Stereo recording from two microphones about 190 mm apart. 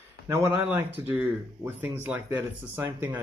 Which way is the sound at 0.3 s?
10° right (ahead or behind).